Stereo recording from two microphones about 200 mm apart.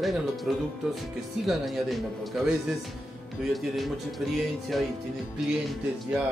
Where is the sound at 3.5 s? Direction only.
Centre (ahead or behind).